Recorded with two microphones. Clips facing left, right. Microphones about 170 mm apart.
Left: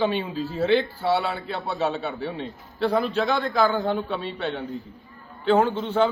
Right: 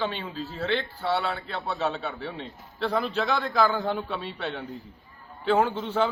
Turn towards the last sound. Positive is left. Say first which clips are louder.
# left 3 dB
turn(degrees=-5)  # may be behind; listen again after turning